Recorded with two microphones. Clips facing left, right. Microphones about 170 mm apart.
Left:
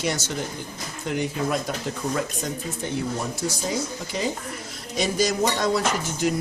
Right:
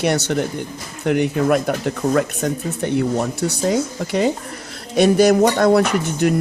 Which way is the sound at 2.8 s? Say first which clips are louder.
Right 9 dB; 65° right (ahead or behind).